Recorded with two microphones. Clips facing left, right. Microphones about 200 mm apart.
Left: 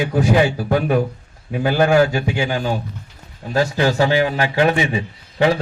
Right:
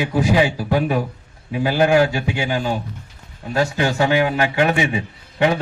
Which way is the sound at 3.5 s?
35° left (ahead or behind).